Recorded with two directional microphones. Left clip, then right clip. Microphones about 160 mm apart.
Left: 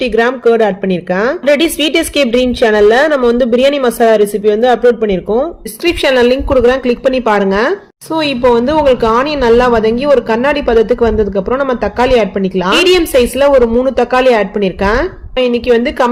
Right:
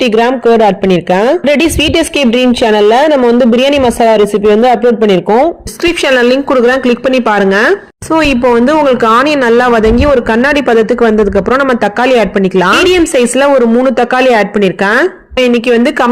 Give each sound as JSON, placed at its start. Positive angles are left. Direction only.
{"t": 0.0, "sound": "a woman's voice", "side_deg": -20}